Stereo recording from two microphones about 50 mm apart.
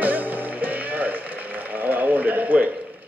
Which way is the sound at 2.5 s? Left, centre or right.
Right.